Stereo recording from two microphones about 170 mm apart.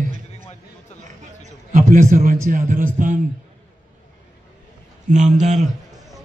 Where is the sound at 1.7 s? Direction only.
45° right (ahead or behind).